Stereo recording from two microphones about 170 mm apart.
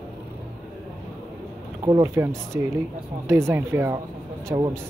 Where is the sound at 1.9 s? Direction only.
20° right (ahead or behind).